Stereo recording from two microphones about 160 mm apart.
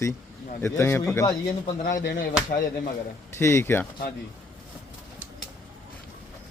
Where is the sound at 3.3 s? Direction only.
15° left (ahead or behind).